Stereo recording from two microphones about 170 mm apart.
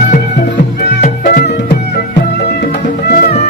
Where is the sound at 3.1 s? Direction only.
60° left (ahead or behind).